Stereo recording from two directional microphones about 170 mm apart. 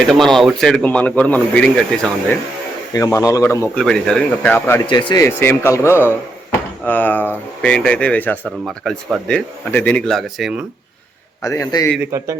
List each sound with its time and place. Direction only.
0.1 s a man's voice: centre (ahead or behind)
2.9 s a man's voice: 20° left (ahead or behind)
3.8 s a man's voice: 5° left (ahead or behind)
4.9 s speech: 25° left (ahead or behind); by 10.5 s centre (ahead or behind)
11.4 s a man's voice: 20° left (ahead or behind)
12.1 s a man's voice: 15° right (ahead or behind)